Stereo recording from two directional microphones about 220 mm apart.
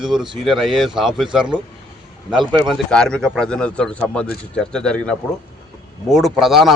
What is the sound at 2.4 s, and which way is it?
Speech, 20° right (ahead or behind).